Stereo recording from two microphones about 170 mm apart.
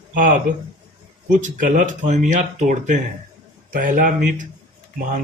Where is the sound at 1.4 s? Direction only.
50° right (ahead or behind).